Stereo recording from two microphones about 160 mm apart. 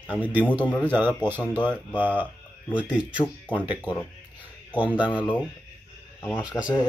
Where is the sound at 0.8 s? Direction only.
15° right (ahead or behind).